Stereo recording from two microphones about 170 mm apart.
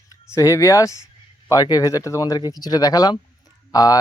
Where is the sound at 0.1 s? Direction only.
20° left (ahead or behind).